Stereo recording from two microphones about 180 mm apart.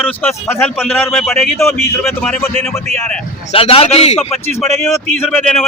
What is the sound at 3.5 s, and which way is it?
Speech, 30° left (ahead or behind).